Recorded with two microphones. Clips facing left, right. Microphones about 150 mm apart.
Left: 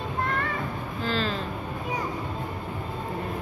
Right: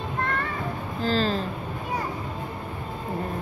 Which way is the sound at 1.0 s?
40° right (ahead or behind).